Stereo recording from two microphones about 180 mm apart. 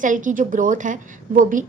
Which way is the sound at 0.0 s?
45° right (ahead or behind).